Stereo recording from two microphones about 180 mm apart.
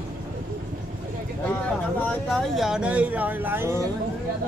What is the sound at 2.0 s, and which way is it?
Speech, centre (ahead or behind).